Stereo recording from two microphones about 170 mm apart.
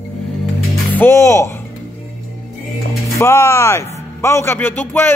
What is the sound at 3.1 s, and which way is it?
A man's voice, 15° left (ahead or behind).